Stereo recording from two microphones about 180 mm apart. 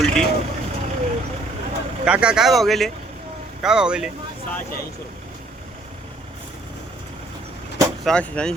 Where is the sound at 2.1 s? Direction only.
5° right (ahead or behind).